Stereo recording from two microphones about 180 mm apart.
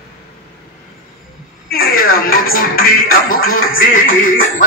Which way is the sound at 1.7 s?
55° left (ahead or behind).